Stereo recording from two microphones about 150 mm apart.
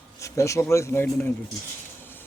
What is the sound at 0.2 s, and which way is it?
Speech, 20° left (ahead or behind).